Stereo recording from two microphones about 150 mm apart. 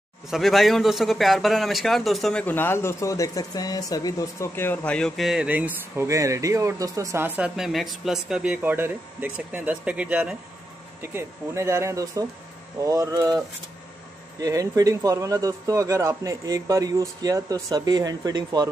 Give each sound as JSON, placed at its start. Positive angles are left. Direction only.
{"t": 0.3, "sound": "speech", "side_deg": 0}
{"t": 2.4, "sound": "speech", "side_deg": 15}
{"t": 14.4, "sound": "speech", "side_deg": -25}